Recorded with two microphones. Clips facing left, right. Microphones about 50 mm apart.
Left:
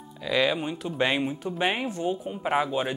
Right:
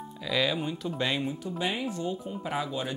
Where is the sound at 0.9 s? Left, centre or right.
Left.